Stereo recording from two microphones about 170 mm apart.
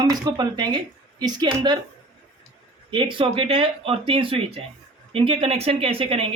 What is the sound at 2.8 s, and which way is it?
Speech, 30° right (ahead or behind).